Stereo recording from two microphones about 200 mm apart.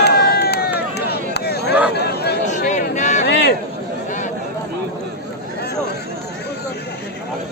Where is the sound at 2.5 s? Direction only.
35° left (ahead or behind).